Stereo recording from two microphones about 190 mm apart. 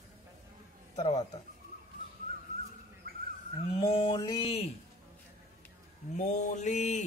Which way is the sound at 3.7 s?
30° left (ahead or behind).